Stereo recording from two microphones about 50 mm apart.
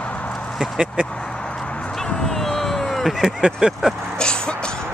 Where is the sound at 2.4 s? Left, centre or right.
Centre.